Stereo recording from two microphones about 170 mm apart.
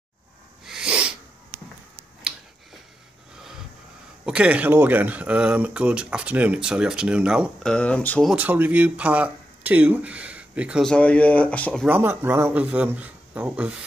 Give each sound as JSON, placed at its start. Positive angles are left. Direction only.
{"t": 0.7, "sound": "sneeze", "side_deg": -5}
{"t": 4.3, "sound": "speech", "side_deg": -5}
{"t": 7.7, "sound": "speech", "side_deg": 5}
{"t": 8.3, "sound": "speech", "side_deg": -10}
{"t": 11.8, "sound": "speech", "side_deg": -10}